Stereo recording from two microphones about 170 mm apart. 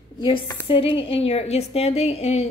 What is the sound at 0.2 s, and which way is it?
A woman's voice, 30° left (ahead or behind).